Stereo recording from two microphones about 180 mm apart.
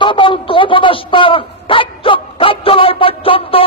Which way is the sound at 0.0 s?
25° left (ahead or behind).